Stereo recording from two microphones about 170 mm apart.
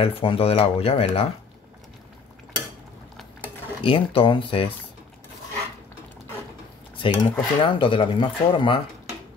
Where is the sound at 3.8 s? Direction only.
30° left (ahead or behind).